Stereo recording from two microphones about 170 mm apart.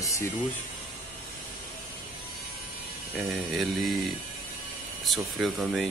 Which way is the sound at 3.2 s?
Centre (ahead or behind).